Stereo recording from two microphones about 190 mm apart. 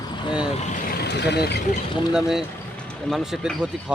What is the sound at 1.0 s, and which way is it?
Speech, 60° left (ahead or behind).